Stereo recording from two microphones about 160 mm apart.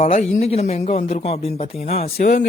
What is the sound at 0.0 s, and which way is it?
A man's voice, 45° left (ahead or behind).